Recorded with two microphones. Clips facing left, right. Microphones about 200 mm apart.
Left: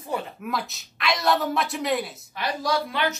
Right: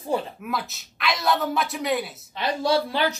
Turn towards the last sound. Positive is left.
turn(degrees=-30)  # may be behind; listen again after turning